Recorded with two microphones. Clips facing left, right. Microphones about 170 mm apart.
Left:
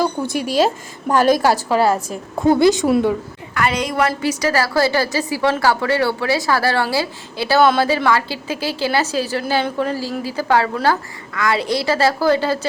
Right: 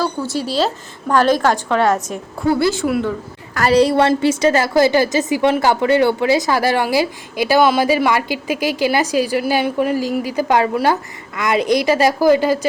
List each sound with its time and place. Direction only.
0.0 s a woman's voice: 15° left (ahead or behind)
2.0 s a woman's voice: 20° left (ahead or behind)
3.5 s a woman's voice: 35° right (ahead or behind); by 12.5 s 15° right (ahead or behind)